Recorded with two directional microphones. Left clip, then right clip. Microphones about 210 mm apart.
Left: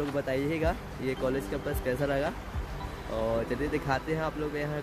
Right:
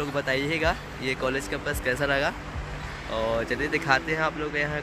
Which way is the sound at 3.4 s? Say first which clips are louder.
Right 6 dB; 15° left (ahead or behind).